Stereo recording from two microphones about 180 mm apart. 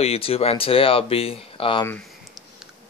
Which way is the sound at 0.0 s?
35° left (ahead or behind).